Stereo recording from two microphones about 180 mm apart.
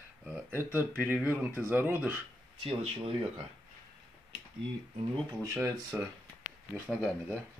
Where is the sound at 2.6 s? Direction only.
30° right (ahead or behind).